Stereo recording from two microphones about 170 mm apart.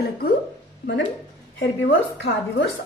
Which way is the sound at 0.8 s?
90° left.